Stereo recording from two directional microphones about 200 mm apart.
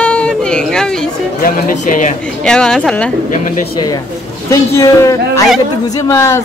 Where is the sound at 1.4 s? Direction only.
45° left (ahead or behind).